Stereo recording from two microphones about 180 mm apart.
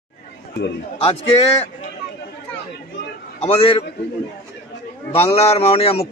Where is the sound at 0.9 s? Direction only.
35° left (ahead or behind).